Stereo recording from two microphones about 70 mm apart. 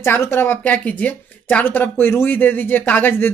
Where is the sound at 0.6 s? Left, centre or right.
Centre.